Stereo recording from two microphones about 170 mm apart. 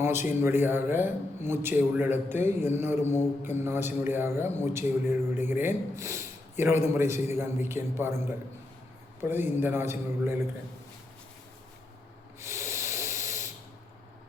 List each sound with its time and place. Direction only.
0.0 s a man's voice: 15° right (ahead or behind)
3.0 s mantra: 40° left (ahead or behind)
3.6 s a man's voice: 15° right (ahead or behind)
9.3 s a man's voice: 10° right (ahead or behind)
12.4 s hiss: 15° right (ahead or behind)
13.2 s a sound: 45° left (ahead or behind)